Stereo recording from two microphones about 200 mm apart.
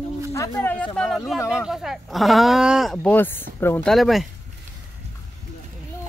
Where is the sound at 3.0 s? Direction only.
10° left (ahead or behind).